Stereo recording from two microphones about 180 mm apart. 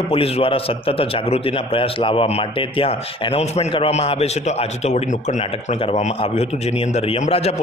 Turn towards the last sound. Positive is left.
turn(degrees=35)  # may be behind; listen again after turning